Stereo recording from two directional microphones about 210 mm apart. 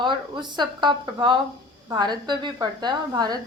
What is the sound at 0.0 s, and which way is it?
A woman's voice, 20° right (ahead or behind).